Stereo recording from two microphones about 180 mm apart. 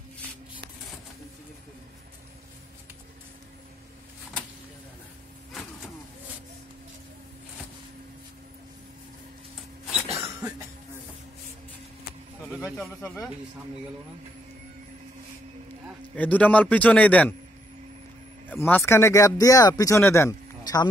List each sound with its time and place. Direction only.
10.1 s cough: 15° right (ahead or behind)
12.5 s speech: centre (ahead or behind)
16.2 s speech: 10° left (ahead or behind)
18.5 s speech: 10° left (ahead or behind)